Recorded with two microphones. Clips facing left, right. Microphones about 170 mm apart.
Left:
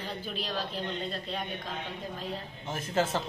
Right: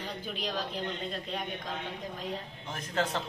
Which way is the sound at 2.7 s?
5° left (ahead or behind).